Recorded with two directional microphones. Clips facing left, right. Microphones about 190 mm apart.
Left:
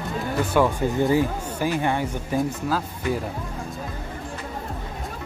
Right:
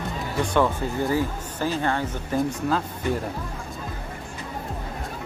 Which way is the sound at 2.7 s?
5° left (ahead or behind).